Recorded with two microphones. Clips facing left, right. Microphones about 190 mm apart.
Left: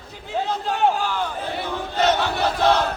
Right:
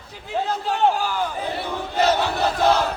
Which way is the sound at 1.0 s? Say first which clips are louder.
Right 1 dB; 10° right (ahead or behind).